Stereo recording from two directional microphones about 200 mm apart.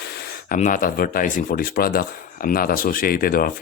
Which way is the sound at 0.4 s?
40° left (ahead or behind).